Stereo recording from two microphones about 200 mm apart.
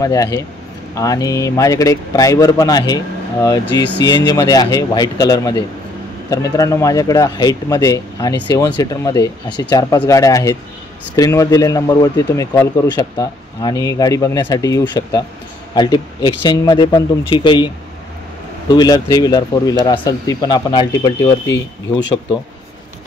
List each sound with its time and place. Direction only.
0.0 s speech: 15° left (ahead or behind)
18.7 s speech: 20° left (ahead or behind)